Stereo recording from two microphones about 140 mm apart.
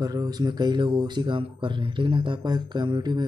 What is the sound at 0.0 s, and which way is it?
Speech, 25° right (ahead or behind).